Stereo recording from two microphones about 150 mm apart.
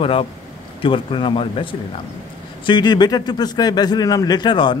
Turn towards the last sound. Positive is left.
turn(degrees=30)  # may be behind; listen again after turning